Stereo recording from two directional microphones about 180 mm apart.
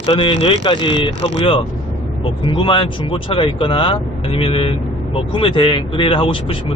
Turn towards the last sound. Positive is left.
turn(degrees=30)  # may be behind; listen again after turning